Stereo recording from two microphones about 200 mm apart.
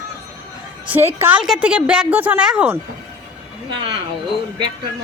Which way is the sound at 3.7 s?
25° right (ahead or behind).